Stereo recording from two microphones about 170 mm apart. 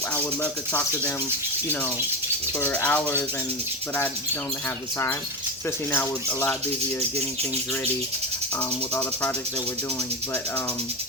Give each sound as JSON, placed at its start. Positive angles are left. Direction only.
{"t": 0.1, "sound": "speech", "side_deg": 10}
{"t": 2.6, "sound": "speech", "side_deg": 10}
{"t": 5.9, "sound": "speech", "side_deg": 10}